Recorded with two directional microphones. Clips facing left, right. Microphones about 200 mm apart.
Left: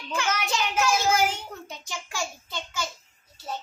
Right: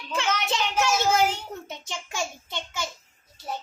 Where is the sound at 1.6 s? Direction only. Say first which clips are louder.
Right 1 dB; 25° right (ahead or behind).